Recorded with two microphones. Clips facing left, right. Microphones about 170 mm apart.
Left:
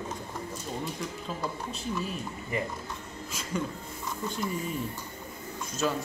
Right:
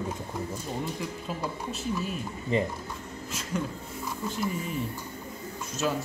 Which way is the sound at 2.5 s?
25° right (ahead or behind).